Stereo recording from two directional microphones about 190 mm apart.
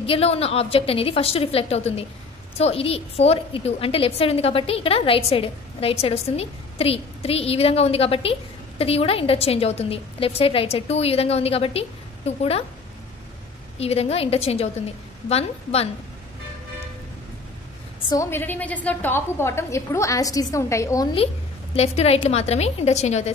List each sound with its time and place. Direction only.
0.0 s a woman's voice: 30° left (ahead or behind)
13.7 s a woman's voice: 30° left (ahead or behind)
18.1 s a woman's voice: 15° left (ahead or behind)
21.7 s a woman's voice: 35° left (ahead or behind)